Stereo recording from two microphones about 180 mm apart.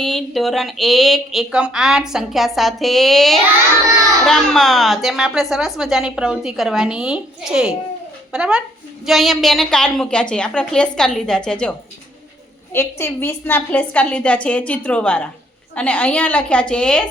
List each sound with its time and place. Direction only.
0.0 s a woman's voice: centre (ahead or behind)
12.7 s a woman's voice: 15° left (ahead or behind)